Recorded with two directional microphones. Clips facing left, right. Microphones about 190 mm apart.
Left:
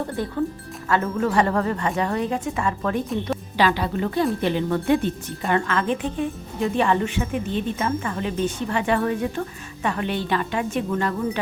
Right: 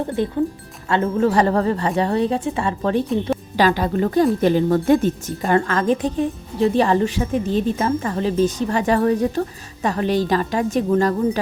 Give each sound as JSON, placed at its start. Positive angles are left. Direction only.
{"t": 0.2, "sound": "speech", "side_deg": -20}
{"t": 3.6, "sound": "speech", "side_deg": -45}